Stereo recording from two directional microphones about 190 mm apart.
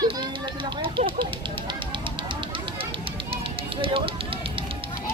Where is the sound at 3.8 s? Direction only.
30° right (ahead or behind).